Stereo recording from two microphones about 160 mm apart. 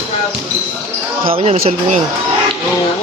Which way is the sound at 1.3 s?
45° right (ahead or behind).